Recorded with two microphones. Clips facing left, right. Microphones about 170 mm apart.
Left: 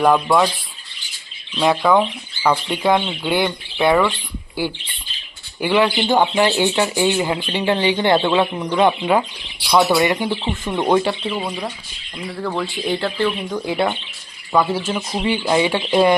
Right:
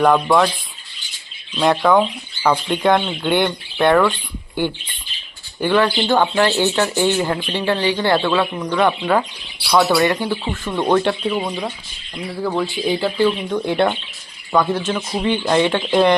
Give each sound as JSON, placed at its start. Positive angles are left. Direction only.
{"t": 0.0, "sound": "speech", "side_deg": 5}
{"t": 1.6, "sound": "speech", "side_deg": 5}
{"t": 11.2, "sound": "speech", "side_deg": -5}